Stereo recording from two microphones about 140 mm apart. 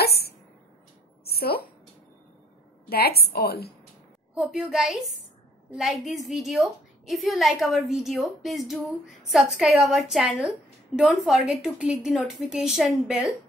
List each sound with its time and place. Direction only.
1.3 s a sound: 90° left
2.9 s a woman's voice: 90° left
4.4 s a woman's voice: centre (ahead or behind)